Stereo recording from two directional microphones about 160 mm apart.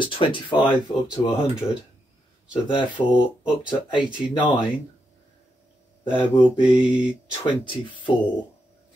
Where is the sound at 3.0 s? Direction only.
25° left (ahead or behind).